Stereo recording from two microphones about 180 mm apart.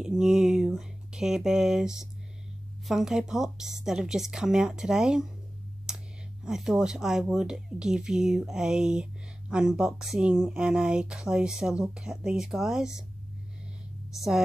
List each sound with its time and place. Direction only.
0.0 s speech: 5° right (ahead or behind)
5.9 s a sound: 5° right (ahead or behind)
6.4 s speech: 5° right (ahead or behind)